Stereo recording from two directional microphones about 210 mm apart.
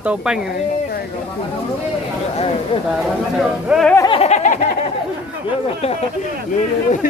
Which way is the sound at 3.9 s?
20° left (ahead or behind).